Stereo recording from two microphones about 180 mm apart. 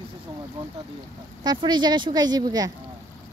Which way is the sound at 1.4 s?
25° right (ahead or behind).